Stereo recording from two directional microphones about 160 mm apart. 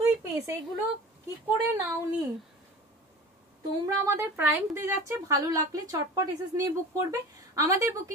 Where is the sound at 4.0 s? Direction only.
15° right (ahead or behind).